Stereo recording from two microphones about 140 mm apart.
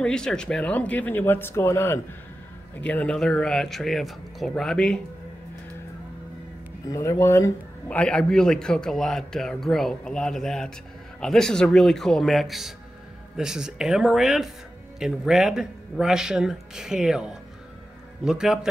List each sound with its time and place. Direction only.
0.0 s a man's voice: 5° left (ahead or behind)
6.9 s speech: 20° left (ahead or behind)
7.9 s a man's voice: 5° left (ahead or behind)